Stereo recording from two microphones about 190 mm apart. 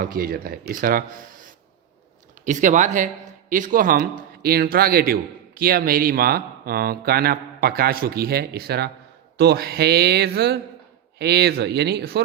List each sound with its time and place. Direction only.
0.0 s a man's voice: 50° right (ahead or behind)
2.4 s a man's voice: 40° right (ahead or behind); by 12.2 s 60° right (ahead or behind)